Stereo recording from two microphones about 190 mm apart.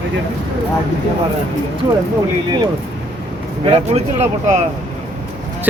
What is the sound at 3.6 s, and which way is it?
Speech, 30° right (ahead or behind).